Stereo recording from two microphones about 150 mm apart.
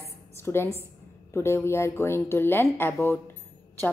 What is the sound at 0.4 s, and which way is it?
A woman's voice, 15° left (ahead or behind).